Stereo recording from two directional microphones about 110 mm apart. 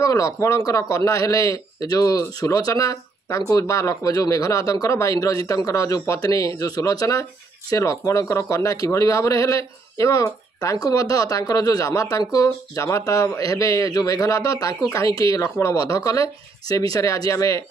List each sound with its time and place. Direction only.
0.0 s speech: 30° left (ahead or behind)